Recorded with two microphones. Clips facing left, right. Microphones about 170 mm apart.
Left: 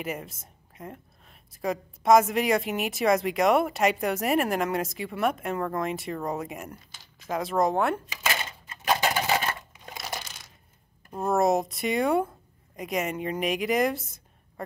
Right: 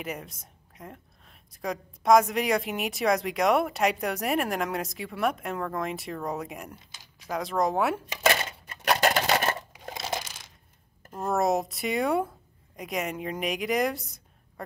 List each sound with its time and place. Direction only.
0.0 s a woman's voice: centre (ahead or behind)
8.5 s a sound: 70° right (ahead or behind)
11.2 s a woman's voice: centre (ahead or behind)